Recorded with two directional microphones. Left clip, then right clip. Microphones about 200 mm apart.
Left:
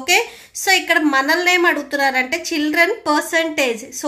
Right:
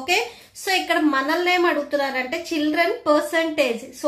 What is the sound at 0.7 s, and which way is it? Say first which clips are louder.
A woman's voice: left 5 dB; 25° left (ahead or behind).